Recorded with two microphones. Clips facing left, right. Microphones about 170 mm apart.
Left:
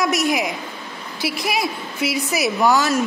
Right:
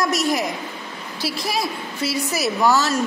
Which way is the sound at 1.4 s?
20° left (ahead or behind).